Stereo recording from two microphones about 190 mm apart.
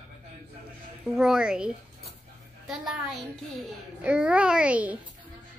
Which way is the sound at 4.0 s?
5° right (ahead or behind).